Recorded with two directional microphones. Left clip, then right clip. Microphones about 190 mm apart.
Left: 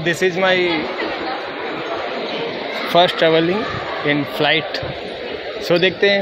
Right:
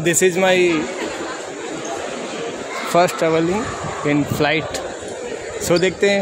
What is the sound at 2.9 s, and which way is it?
Speech, 25° right (ahead or behind).